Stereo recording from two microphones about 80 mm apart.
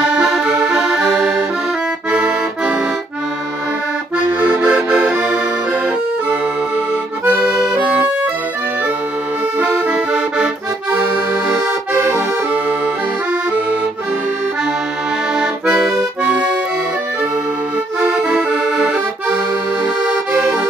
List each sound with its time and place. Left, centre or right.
0.0 s music: centre
2.0 s accordion: centre
4.2 s accordion: right
7.2 s accordion: centre
9.6 s accordion: centre
15.3 s accordion: centre
18.0 s accordion: centre